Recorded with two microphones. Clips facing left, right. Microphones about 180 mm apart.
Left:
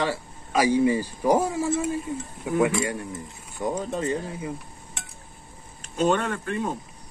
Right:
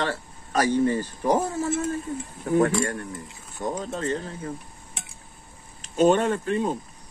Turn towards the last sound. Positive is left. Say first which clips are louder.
# right 4 dB
turn(degrees=-20)  # may be behind; listen again after turning